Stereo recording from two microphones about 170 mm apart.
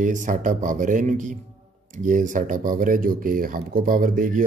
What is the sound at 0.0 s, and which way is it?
Speech, 50° right (ahead or behind).